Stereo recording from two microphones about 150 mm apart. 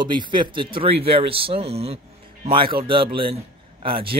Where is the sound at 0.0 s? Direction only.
30° right (ahead or behind).